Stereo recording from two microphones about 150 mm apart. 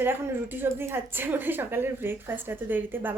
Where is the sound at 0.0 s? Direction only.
15° right (ahead or behind).